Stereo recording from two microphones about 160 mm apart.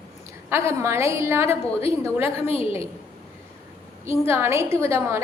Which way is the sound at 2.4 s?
35° left (ahead or behind).